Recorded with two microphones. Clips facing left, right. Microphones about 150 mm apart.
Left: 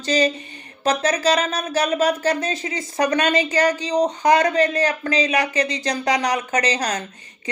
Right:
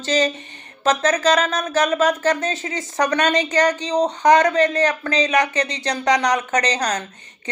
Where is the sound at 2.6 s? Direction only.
35° right (ahead or behind).